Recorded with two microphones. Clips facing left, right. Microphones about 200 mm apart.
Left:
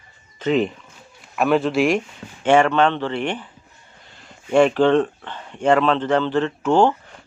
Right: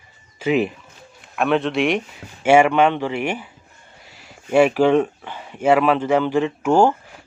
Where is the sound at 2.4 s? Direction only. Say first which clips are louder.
Right 2 dB; 10° right (ahead or behind).